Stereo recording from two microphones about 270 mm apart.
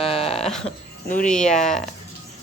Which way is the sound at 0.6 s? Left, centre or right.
Left.